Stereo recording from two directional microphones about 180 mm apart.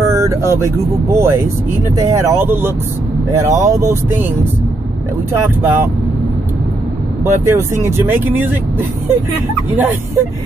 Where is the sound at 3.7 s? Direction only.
15° right (ahead or behind).